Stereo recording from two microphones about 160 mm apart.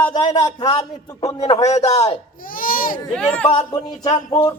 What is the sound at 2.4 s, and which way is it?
Baby cry, 60° left (ahead or behind).